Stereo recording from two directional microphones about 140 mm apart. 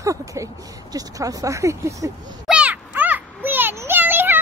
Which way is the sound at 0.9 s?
25° right (ahead or behind).